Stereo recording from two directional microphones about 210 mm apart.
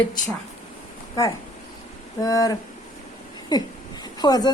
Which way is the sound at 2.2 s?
15° left (ahead or behind).